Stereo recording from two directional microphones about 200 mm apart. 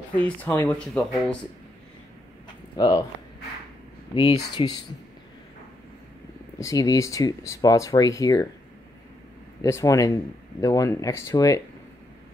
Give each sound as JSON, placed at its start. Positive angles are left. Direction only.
{"t": 0.1, "sound": "speech", "side_deg": 10}
{"t": 2.8, "sound": "speech", "side_deg": 15}
{"t": 4.1, "sound": "speech", "side_deg": 25}
{"t": 6.6, "sound": "speech", "side_deg": 15}
{"t": 9.6, "sound": "speech", "side_deg": 15}